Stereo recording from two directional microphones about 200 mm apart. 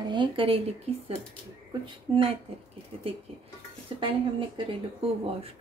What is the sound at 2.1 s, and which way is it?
Speech, 25° right (ahead or behind).